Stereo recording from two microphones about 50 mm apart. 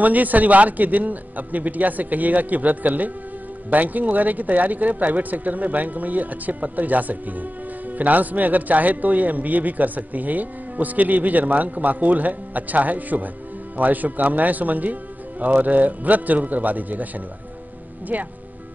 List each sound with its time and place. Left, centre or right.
0.0 s a man's voice: right
18.1 s a man's voice: right